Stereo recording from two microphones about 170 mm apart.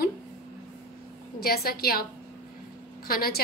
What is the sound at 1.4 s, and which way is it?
Speech, 60° left (ahead or behind).